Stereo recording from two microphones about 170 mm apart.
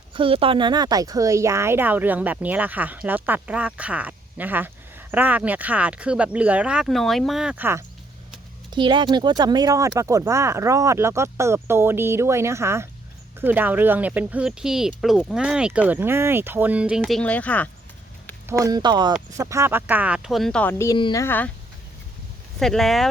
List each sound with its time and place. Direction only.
0.1 s speech: 30° right (ahead or behind); by 7.9 s 15° right (ahead or behind)
8.7 s speech: 25° right (ahead or behind); by 17.7 s 10° left (ahead or behind)
18.4 s speech: 20° right (ahead or behind); by 21.5 s 10° left (ahead or behind)
22.5 s speech: centre (ahead or behind)